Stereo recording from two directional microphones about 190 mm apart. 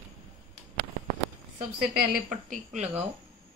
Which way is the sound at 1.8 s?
50° right (ahead or behind).